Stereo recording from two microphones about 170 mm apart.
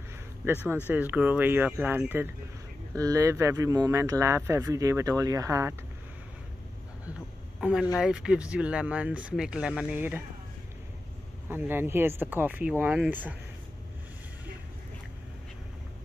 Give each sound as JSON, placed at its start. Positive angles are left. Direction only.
{"t": 0.4, "sound": "speech", "side_deg": -15}
{"t": 7.6, "sound": "speech", "side_deg": -5}
{"t": 11.4, "sound": "speech", "side_deg": -10}